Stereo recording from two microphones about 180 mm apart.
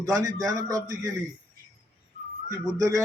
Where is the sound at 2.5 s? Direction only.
20° right (ahead or behind).